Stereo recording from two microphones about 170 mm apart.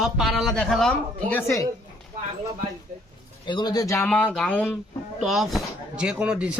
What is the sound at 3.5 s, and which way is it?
Speech, 25° left (ahead or behind).